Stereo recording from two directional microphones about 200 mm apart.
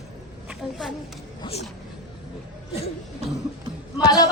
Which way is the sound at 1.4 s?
30° left (ahead or behind).